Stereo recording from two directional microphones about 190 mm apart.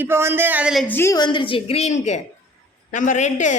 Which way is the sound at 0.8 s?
10° left (ahead or behind).